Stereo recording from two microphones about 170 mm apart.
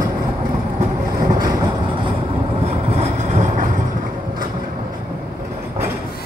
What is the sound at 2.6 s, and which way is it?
Vehicle, 40° right (ahead or behind).